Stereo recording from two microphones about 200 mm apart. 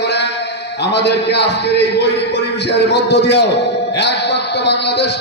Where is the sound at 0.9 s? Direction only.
60° left (ahead or behind).